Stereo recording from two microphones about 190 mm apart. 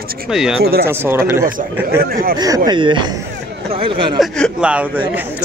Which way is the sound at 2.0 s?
50° right (ahead or behind).